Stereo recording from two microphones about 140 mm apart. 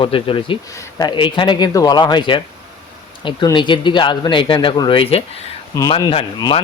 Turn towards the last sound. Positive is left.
turn(degrees=40)  # may be behind; listen again after turning